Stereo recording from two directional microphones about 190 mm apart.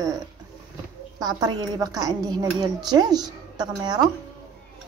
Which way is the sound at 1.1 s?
20° right (ahead or behind).